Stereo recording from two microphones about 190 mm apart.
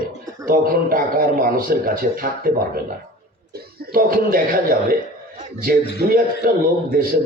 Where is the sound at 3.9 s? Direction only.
50° right (ahead or behind).